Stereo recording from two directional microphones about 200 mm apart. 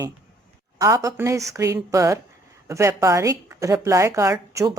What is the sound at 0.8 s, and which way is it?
Speech, 15° right (ahead or behind).